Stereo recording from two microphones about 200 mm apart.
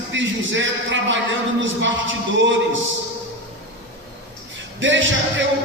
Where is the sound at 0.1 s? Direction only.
70° right (ahead or behind).